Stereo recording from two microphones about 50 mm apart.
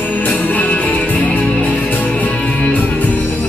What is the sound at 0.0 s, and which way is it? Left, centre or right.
Music, left.